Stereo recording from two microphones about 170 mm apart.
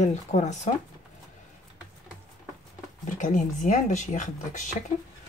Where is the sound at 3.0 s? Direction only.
45° left (ahead or behind).